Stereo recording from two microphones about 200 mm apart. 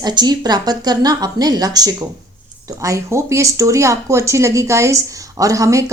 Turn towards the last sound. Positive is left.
turn(degrees=-15)  # may be behind; listen again after turning